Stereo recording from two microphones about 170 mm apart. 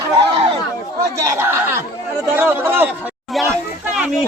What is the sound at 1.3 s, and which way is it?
Chatter, 15° right (ahead or behind).